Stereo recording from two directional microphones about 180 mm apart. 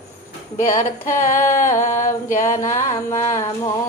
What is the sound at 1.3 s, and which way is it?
Humming, 15° left (ahead or behind).